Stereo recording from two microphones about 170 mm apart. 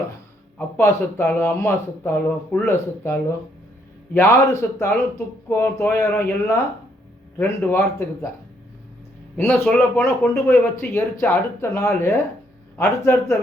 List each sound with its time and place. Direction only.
0.8 s speech: 15° left (ahead or behind)
9.4 s speech: 10° left (ahead or behind)